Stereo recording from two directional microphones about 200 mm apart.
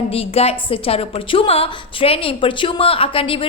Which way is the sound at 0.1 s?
30° left (ahead or behind).